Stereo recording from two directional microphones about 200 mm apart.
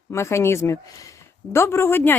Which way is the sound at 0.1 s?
15° left (ahead or behind).